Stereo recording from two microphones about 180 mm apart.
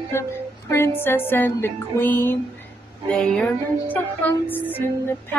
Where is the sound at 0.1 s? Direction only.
15° left (ahead or behind).